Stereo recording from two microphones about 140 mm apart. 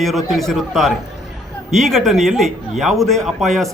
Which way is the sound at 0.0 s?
Centre (ahead or behind).